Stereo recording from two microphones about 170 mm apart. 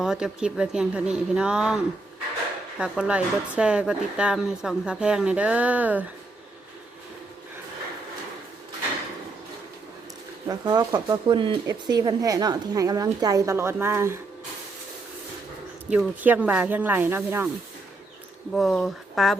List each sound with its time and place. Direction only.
0.0 s speech: 5° right (ahead or behind)
10.4 s a woman's voice: 25° right (ahead or behind)
15.9 s speech: 10° right (ahead or behind)
18.5 s speech: 5° left (ahead or behind)